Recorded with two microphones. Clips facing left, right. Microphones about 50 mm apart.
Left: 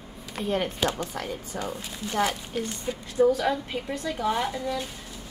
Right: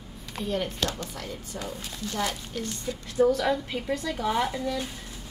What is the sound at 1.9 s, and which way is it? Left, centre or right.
Speech, centre.